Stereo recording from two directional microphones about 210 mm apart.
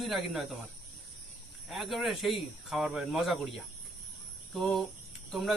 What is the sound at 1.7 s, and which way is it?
Speech, centre (ahead or behind).